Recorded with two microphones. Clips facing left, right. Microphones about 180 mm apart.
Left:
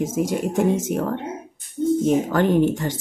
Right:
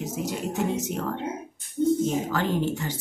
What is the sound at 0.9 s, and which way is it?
Speech, 50° left (ahead or behind).